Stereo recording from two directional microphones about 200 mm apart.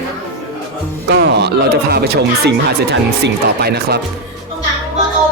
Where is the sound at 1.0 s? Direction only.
60° right (ahead or behind).